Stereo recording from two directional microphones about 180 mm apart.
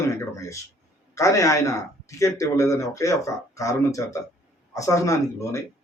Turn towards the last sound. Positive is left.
turn(degrees=15)  # may be behind; listen again after turning